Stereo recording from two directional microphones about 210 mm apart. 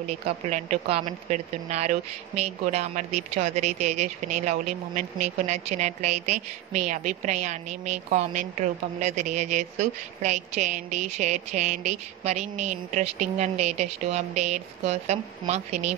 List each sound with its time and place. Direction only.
0.2 s a woman's voice: 35° right (ahead or behind)